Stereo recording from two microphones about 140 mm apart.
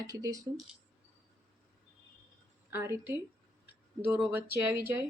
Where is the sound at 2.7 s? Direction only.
20° right (ahead or behind).